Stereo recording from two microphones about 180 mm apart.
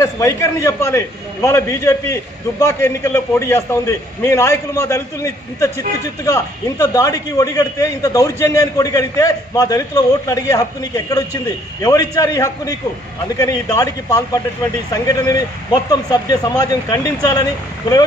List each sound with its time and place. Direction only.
0.0 s a man's voice: 20° left (ahead or behind)